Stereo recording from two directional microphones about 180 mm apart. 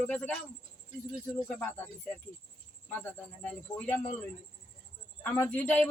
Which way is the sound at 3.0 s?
10° left (ahead or behind).